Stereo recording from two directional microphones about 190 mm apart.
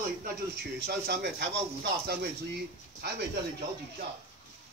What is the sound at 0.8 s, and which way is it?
Speech, 60° right (ahead or behind).